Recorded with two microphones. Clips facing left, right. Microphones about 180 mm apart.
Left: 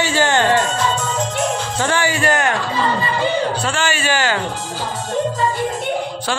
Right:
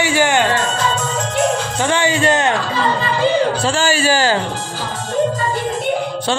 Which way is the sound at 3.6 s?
35° right (ahead or behind).